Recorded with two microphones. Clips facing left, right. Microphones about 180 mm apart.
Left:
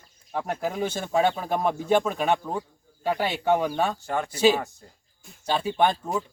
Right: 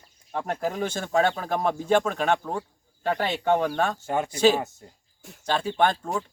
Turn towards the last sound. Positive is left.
turn(degrees=10)  # may be behind; listen again after turning